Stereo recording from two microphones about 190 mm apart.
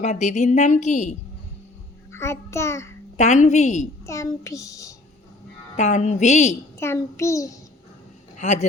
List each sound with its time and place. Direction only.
0.0 s a woman's voice: 35° left (ahead or behind)
2.1 s a child's voice: 15° left (ahead or behind)
3.2 s a woman's voice: 40° left (ahead or behind)
4.0 s a child's voice: 15° left (ahead or behind)
5.7 s a woman's voice: 40° left (ahead or behind)
6.7 s a child's voice: 15° left (ahead or behind)
8.4 s speech: 40° left (ahead or behind)